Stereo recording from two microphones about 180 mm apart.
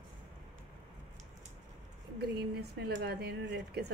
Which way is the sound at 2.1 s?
65° right (ahead or behind).